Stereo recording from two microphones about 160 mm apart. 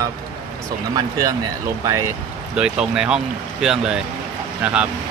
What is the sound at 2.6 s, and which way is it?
Speech, 5° right (ahead or behind).